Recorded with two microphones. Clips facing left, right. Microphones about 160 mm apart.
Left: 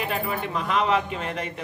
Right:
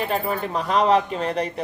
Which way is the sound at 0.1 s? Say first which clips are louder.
Right 3 dB; 40° right (ahead or behind).